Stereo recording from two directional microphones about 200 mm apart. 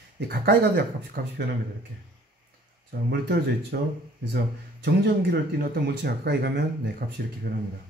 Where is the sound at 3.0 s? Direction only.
55° right (ahead or behind).